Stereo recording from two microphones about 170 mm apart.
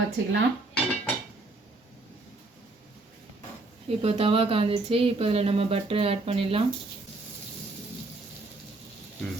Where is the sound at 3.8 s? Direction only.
35° right (ahead or behind).